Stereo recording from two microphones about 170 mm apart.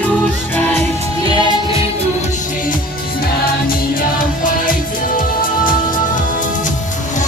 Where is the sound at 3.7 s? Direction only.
55° left (ahead or behind).